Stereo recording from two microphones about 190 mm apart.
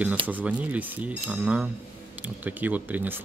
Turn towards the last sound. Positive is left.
turn(degrees=-10)  # may be behind; listen again after turning